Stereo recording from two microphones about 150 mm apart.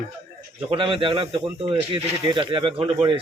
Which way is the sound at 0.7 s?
35° right (ahead or behind).